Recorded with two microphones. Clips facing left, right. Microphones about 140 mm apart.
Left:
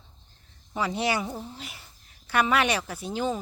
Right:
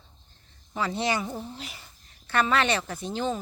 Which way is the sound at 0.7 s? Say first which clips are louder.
Left 1 dB; 10° left (ahead or behind).